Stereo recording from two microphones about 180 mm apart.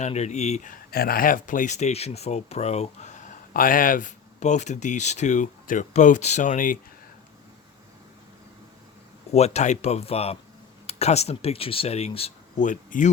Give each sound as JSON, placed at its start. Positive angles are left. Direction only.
{"t": 0.0, "sound": "speech", "side_deg": 40}
{"t": 9.3, "sound": "speech", "side_deg": 35}